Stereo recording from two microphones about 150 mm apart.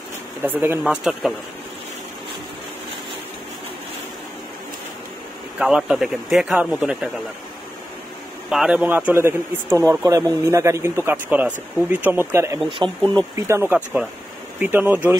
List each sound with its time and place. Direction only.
0.4 s speech: 15° right (ahead or behind)
5.6 s speech: 5° right (ahead or behind)
8.5 s speech: 5° right (ahead or behind)
12.6 s speech: 35° right (ahead or behind)
13.4 s speech: 15° right (ahead or behind)